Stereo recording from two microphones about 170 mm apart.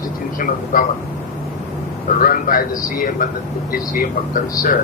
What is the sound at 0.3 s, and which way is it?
Speech, 55° left (ahead or behind).